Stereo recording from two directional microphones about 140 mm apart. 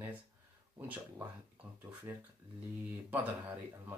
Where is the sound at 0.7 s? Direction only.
15° right (ahead or behind).